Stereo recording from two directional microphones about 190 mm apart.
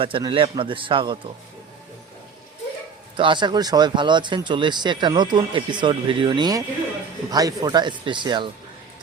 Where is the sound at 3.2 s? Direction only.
25° right (ahead or behind).